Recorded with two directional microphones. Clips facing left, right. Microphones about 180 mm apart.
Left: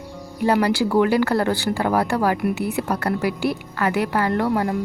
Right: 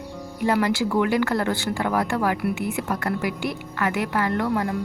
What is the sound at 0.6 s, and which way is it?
Speech, 35° left (ahead or behind).